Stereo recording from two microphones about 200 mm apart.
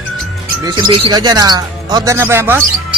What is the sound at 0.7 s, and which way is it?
Speech, 25° right (ahead or behind).